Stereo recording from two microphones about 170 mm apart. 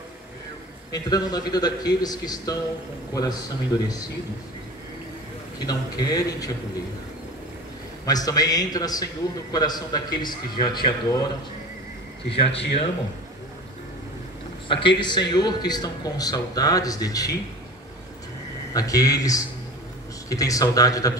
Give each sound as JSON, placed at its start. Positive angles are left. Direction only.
{"t": 0.9, "sound": "a man's voice", "side_deg": 20}
{"t": 5.7, "sound": "a man's voice", "side_deg": 20}
{"t": 8.0, "sound": "a man's voice", "side_deg": 20}
{"t": 12.3, "sound": "speech", "side_deg": 35}
{"t": 14.7, "sound": "a man's voice", "side_deg": 30}
{"t": 18.7, "sound": "a man's voice", "side_deg": 20}